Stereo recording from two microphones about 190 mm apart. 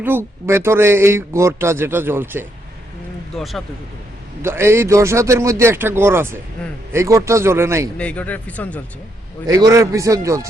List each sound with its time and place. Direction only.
0.0 s a man's voice: 10° right (ahead or behind)
3.3 s speech: centre (ahead or behind)
4.4 s a man's voice: 15° right (ahead or behind)
7.9 s speech: 5° left (ahead or behind)
9.5 s a man's voice: 15° right (ahead or behind)